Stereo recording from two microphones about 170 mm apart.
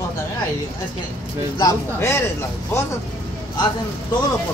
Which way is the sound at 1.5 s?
20° left (ahead or behind).